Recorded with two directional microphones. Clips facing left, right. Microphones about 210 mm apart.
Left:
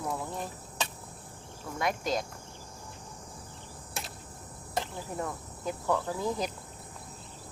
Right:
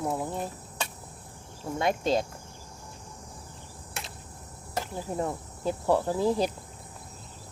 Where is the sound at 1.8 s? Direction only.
25° right (ahead or behind).